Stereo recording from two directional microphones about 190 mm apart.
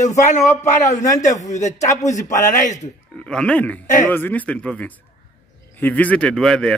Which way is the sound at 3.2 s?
5° left (ahead or behind).